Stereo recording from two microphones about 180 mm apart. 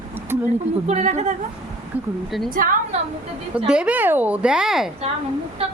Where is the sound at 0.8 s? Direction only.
40° right (ahead or behind).